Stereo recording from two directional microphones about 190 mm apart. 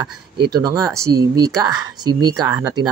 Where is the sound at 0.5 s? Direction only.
20° right (ahead or behind).